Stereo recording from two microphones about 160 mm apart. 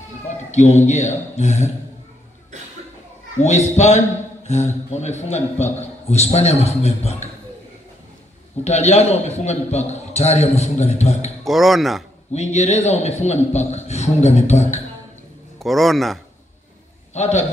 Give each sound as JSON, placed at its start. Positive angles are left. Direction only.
{"t": 0.5, "sound": "a man's voice", "side_deg": 45}
{"t": 3.3, "sound": "a man's voice", "side_deg": 45}
{"t": 8.6, "sound": "a man's voice", "side_deg": 45}
{"t": 11.4, "sound": "speech", "side_deg": 0}
{"t": 12.3, "sound": "a man's voice", "side_deg": 45}
{"t": 15.6, "sound": "speech", "side_deg": 0}
{"t": 17.1, "sound": "a man's voice", "side_deg": 45}